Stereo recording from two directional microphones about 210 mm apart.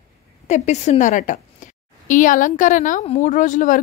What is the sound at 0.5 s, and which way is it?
A woman's voice, 35° left (ahead or behind).